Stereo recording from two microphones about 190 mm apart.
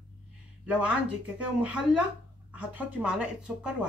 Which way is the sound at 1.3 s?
5° right (ahead or behind).